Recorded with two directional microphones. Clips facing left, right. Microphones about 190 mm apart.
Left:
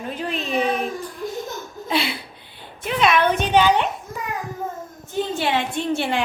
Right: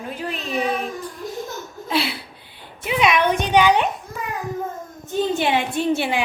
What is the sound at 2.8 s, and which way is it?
Speech, 15° right (ahead or behind).